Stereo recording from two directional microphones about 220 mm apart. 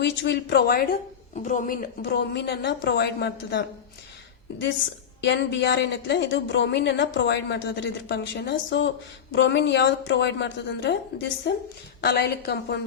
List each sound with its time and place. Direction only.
0.0 s speech: 50° left (ahead or behind)
5.2 s speech: 55° left (ahead or behind)